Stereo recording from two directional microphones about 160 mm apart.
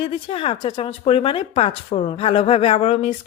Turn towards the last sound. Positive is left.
turn(degrees=40)  # may be behind; listen again after turning